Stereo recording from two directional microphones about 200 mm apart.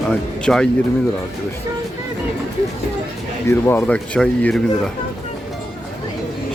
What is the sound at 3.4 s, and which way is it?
Speech, 10° left (ahead or behind).